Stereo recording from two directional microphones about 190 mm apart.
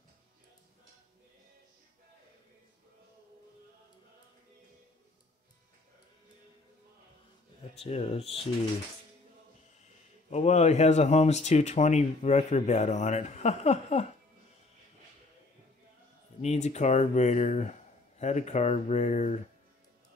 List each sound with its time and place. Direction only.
7.7 s speech: 30° left (ahead or behind)
10.3 s speech: 35° left (ahead or behind)
16.3 s speech: 35° left (ahead or behind)